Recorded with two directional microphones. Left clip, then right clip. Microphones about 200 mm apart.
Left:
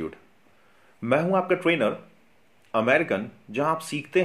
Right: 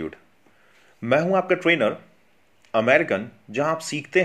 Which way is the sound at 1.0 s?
20° right (ahead or behind).